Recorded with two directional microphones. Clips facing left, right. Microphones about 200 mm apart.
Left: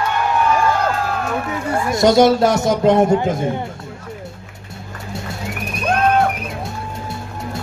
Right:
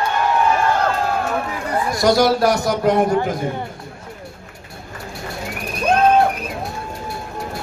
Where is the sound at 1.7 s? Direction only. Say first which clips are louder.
Left 2 dB; 25° left (ahead or behind).